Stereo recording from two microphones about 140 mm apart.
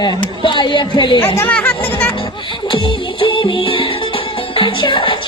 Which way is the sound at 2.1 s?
35° left (ahead or behind).